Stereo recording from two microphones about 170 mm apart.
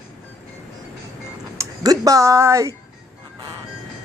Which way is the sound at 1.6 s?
20° right (ahead or behind).